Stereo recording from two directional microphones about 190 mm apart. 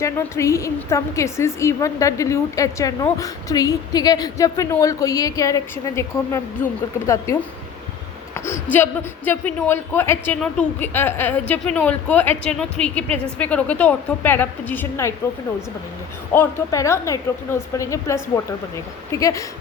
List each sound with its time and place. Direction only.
0.0 s a woman's voice: 15° left (ahead or behind)
8.7 s a woman's voice: 10° left (ahead or behind)
16.3 s a woman's voice: 10° left (ahead or behind)